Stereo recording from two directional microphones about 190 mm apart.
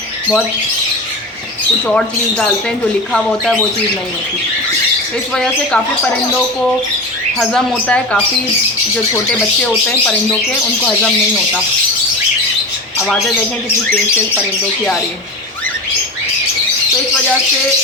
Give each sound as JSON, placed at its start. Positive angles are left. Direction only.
{"t": 2.0, "sound": "speech", "side_deg": 5}
{"t": 5.3, "sound": "speech", "side_deg": 5}
{"t": 7.3, "sound": "speech", "side_deg": 5}
{"t": 9.6, "sound": "speech", "side_deg": 5}